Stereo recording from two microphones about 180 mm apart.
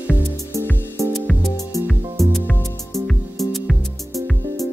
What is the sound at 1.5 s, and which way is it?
Music, 20° left (ahead or behind).